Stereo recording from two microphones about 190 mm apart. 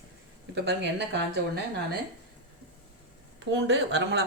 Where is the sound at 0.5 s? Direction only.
65° right (ahead or behind).